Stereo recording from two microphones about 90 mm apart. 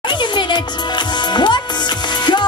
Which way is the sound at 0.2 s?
60° left (ahead or behind).